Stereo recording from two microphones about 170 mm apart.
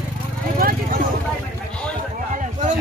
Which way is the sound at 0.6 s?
60° right (ahead or behind).